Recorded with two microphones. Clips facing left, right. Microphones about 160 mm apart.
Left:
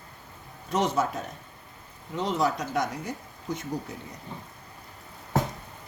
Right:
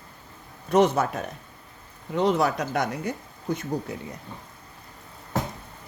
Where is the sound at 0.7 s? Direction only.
60° right (ahead or behind).